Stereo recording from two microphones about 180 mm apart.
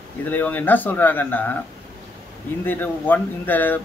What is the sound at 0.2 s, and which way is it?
Speech, 10° left (ahead or behind).